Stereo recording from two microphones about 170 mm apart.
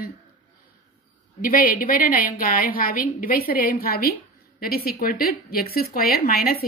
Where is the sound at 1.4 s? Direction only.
55° left (ahead or behind).